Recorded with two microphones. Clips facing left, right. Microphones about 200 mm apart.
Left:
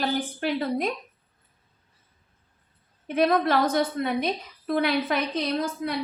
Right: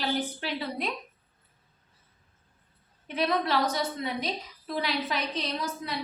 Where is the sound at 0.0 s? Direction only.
50° left (ahead or behind).